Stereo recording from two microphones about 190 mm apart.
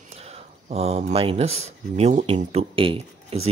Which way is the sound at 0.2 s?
35° right (ahead or behind).